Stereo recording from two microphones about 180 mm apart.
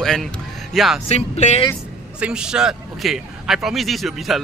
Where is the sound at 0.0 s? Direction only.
Centre (ahead or behind).